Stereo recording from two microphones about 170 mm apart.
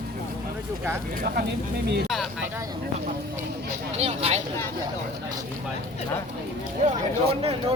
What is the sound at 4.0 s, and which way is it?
Speech, 40° right (ahead or behind).